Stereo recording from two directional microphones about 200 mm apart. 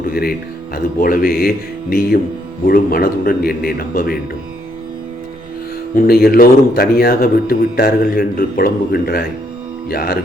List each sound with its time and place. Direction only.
0.0 s music: 50° left (ahead or behind)
0.9 s speech: 45° left (ahead or behind)
6.0 s speech: 50° left (ahead or behind)